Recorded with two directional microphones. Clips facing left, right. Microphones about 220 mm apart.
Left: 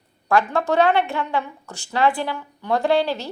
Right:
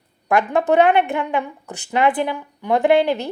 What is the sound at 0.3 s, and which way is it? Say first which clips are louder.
Speech: right 3 dB; 20° right (ahead or behind).